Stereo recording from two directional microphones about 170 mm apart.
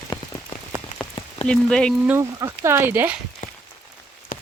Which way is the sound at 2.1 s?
15° right (ahead or behind).